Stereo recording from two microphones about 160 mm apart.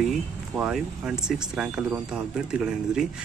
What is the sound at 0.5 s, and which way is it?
Speech, 5° right (ahead or behind).